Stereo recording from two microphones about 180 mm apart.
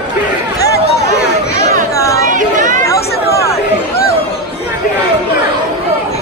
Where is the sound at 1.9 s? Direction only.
15° left (ahead or behind).